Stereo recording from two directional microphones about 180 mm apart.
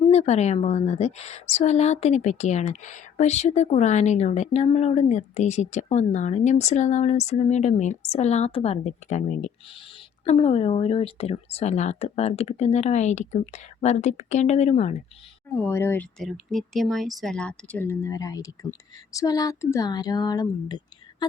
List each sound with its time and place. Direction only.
0.1 s a woman's voice: 40° left (ahead or behind)
15.5 s speech: 15° left (ahead or behind)